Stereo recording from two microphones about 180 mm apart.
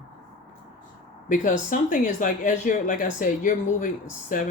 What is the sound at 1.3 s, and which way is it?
Speech, 45° left (ahead or behind).